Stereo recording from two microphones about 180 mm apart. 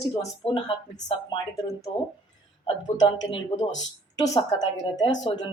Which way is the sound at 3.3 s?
30° left (ahead or behind).